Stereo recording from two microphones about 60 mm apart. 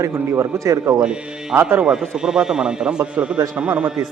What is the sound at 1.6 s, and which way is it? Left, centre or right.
Speech, right.